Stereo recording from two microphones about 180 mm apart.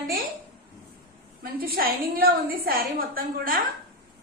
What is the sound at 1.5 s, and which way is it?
A woman's voice, 55° right (ahead or behind).